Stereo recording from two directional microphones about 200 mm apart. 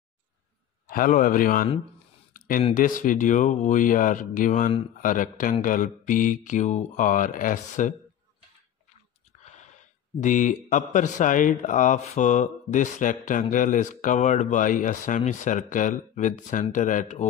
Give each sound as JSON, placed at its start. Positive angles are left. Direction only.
{"t": 0.8, "sound": "speech", "side_deg": 40}
{"t": 2.3, "sound": "a sound", "side_deg": 45}
{"t": 2.7, "sound": "speech", "side_deg": 40}
{"t": 9.4, "sound": "speech", "side_deg": 35}